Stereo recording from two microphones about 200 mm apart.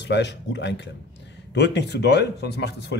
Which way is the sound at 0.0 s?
60° left (ahead or behind).